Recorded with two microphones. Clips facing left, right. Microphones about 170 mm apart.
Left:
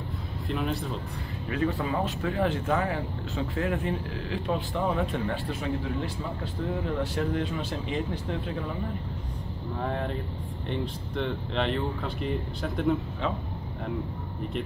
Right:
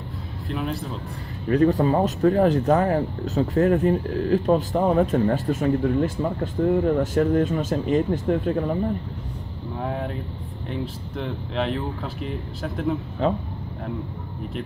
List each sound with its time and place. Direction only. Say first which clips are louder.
0.5 s speech: right 2 dB; centre (ahead or behind)
1.5 s speech: right 10 dB; 40° right (ahead or behind)
9.8 s speech: right 2 dB; 5° right (ahead or behind)
13.2 s speech: right 11 dB; 40° right (ahead or behind)